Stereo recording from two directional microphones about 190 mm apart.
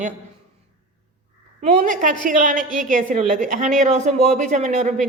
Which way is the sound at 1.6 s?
40° right (ahead or behind).